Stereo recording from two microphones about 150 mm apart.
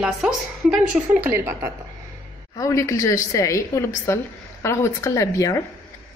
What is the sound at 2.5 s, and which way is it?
A woman's voice, 20° left (ahead or behind).